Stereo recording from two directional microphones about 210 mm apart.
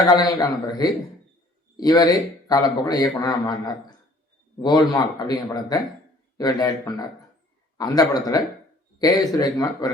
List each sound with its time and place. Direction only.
0.2 s a man's voice: 20° left (ahead or behind)